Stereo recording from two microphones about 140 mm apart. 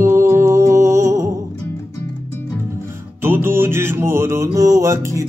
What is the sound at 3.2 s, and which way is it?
Music, 15° right (ahead or behind).